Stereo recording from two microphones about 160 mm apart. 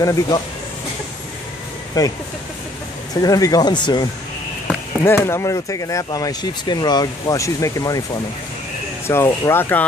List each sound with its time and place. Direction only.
0.0 s speech: 20° left (ahead or behind)
2.0 s speech: 25° left (ahead or behind)
3.2 s speech: 25° left (ahead or behind)
4.6 s speech: 15° left (ahead or behind)
9.0 s speech: 15° left (ahead or behind)